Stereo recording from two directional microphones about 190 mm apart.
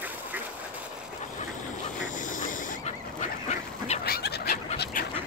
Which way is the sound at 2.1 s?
45° left (ahead or behind).